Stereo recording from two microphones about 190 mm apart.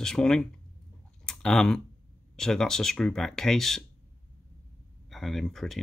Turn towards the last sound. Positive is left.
turn(degrees=0)  # may be behind; listen again after turning